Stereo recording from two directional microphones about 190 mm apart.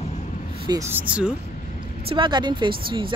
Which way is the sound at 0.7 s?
15° right (ahead or behind).